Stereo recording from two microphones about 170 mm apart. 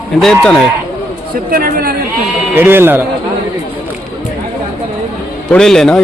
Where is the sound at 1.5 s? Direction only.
60° right (ahead or behind).